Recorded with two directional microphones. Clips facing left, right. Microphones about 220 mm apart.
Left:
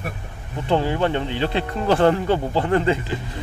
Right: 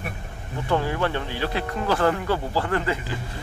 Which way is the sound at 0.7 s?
25° left (ahead or behind).